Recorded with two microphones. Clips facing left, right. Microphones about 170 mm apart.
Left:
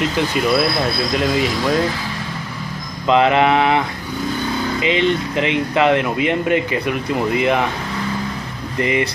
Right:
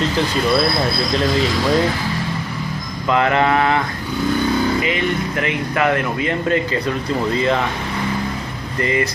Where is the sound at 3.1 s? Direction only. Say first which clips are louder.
Left 2 dB; 20° left (ahead or behind).